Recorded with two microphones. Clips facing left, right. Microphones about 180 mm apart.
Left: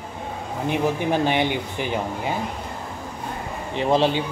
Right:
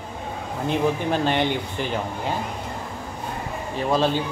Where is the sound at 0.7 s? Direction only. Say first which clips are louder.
Even; 15° left (ahead or behind).